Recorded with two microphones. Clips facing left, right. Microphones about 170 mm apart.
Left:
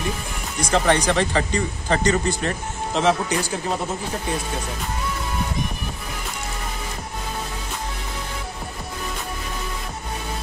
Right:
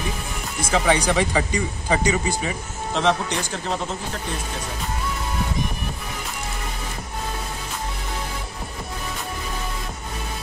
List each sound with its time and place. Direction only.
0.6 s speech: 5° right (ahead or behind)